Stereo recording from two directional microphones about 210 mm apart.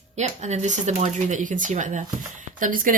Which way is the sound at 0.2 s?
35° right (ahead or behind).